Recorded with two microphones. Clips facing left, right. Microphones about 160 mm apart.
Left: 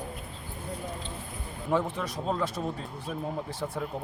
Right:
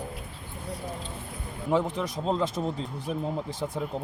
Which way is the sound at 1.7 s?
20° right (ahead or behind).